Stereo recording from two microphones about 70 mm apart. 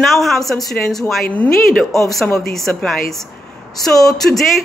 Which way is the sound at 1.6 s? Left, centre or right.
Centre.